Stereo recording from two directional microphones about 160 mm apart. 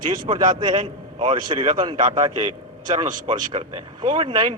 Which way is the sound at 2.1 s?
30° right (ahead or behind).